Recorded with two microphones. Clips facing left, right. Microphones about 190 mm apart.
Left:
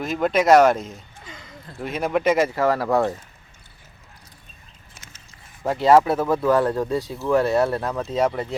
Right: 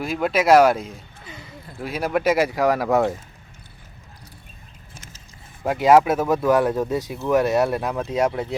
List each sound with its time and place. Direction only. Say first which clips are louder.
0.0 s speech: left 1 dB; 5° right (ahead or behind)
5.6 s speech: right 1 dB; 15° right (ahead or behind)